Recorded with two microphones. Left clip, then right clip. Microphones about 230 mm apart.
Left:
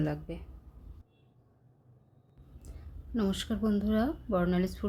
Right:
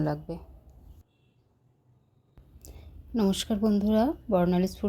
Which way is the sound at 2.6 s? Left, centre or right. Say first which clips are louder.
Right 5 dB; right.